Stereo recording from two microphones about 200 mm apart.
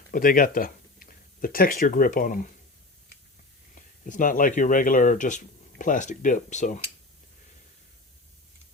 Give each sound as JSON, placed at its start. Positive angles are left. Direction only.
{"t": 0.1, "sound": "speech", "side_deg": 45}
{"t": 3.8, "sound": "speech", "side_deg": 40}